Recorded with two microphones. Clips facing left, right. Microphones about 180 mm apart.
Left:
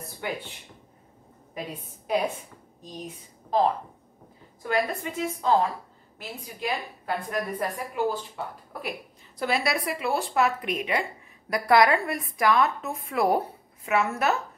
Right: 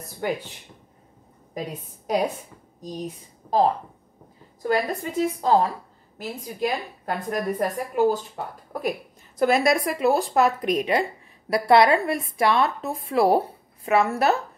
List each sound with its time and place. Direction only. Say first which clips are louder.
0.2 s speech: right 6 dB; 40° right (ahead or behind)
1.5 s a woman's voice: right 4 dB; 40° right (ahead or behind)
4.6 s a woman's voice: right 3 dB; 35° right (ahead or behind)
9.4 s speech: right 7 dB; 45° right (ahead or behind)